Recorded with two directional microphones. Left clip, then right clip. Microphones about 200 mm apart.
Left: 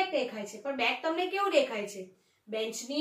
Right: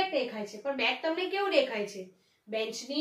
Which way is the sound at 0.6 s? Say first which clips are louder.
Even; 15° right (ahead or behind).